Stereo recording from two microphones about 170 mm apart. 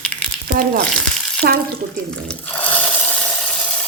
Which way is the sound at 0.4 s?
65° right (ahead or behind).